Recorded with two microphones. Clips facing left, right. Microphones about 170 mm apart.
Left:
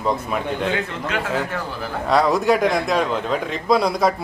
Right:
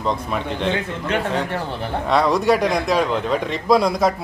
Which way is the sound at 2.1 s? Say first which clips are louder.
Even; centre (ahead or behind).